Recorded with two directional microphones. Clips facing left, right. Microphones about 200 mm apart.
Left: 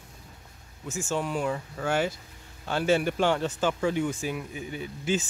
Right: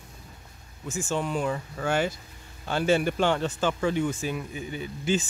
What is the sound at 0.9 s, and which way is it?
Speech, 10° left (ahead or behind).